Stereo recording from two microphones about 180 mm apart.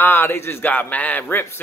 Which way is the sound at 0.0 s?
15° left (ahead or behind).